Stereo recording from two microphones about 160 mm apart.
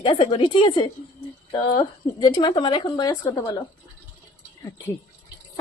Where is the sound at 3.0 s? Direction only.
15° left (ahead or behind).